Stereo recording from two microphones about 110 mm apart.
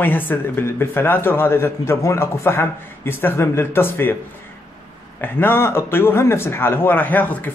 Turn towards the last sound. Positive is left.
turn(degrees=15)  # may be behind; listen again after turning